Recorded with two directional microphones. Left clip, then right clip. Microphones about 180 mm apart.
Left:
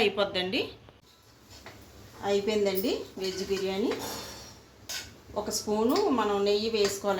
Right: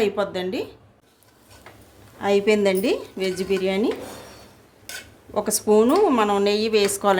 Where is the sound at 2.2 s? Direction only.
80° right.